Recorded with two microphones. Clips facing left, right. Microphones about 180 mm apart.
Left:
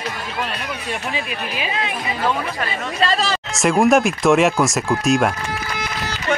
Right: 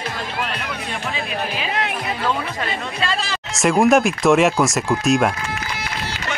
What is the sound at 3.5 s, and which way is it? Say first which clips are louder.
Speech: even; centre (ahead or behind).